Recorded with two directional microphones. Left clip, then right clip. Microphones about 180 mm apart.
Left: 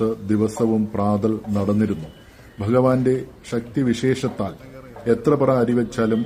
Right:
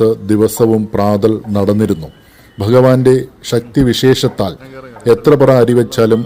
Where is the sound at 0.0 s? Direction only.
25° right (ahead or behind).